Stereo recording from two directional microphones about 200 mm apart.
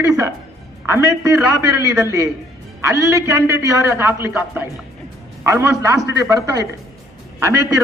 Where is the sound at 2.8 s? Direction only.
15° right (ahead or behind).